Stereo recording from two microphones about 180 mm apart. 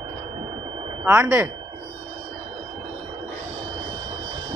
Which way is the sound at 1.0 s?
15° right (ahead or behind).